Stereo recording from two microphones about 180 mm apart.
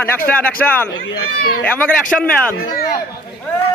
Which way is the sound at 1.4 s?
55° left (ahead or behind).